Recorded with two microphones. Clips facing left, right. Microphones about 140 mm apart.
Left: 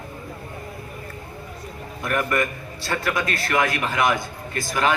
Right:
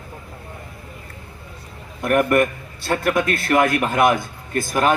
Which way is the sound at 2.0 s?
55° right (ahead or behind).